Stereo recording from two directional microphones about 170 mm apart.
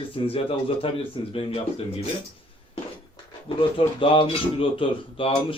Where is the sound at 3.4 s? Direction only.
30° left (ahead or behind).